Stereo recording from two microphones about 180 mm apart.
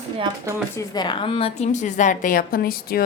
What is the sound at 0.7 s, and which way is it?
A woman's voice, 20° left (ahead or behind).